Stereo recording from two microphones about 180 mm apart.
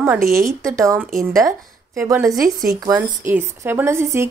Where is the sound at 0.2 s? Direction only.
55° right (ahead or behind).